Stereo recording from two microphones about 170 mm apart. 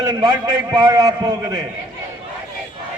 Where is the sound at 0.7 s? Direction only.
20° right (ahead or behind).